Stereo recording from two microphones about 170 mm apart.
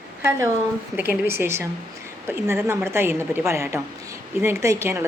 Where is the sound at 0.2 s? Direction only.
15° right (ahead or behind).